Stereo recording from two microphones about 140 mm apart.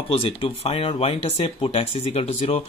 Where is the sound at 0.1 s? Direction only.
45° left (ahead or behind).